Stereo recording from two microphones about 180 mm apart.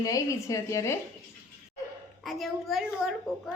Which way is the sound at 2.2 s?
Centre (ahead or behind).